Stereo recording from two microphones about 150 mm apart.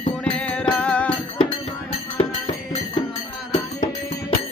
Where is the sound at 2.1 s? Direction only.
40° left (ahead or behind).